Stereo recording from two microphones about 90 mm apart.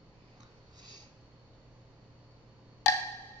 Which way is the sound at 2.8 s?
30° left (ahead or behind).